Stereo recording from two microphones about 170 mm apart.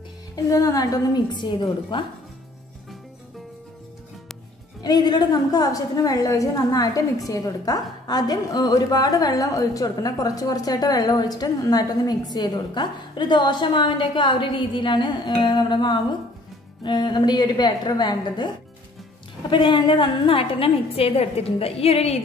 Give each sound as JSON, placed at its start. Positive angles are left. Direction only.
{"t": 0.5, "sound": "a woman's voice", "side_deg": 20}
{"t": 4.8, "sound": "a woman's voice", "side_deg": 25}
{"t": 19.5, "sound": "a woman's voice", "side_deg": 30}